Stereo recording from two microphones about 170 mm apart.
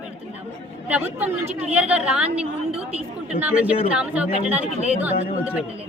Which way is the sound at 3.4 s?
5° right (ahead or behind).